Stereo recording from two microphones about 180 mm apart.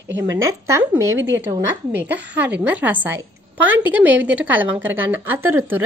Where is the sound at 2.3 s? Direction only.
10° right (ahead or behind).